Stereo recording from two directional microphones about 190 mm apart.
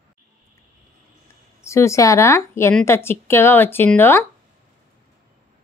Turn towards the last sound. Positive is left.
turn(degrees=10)  # may be behind; listen again after turning